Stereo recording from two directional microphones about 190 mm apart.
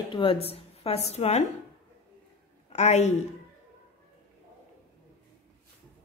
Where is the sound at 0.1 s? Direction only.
30° left (ahead or behind).